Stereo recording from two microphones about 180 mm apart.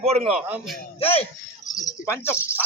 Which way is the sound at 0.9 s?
30° left (ahead or behind).